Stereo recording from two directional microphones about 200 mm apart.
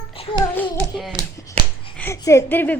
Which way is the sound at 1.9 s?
15° left (ahead or behind).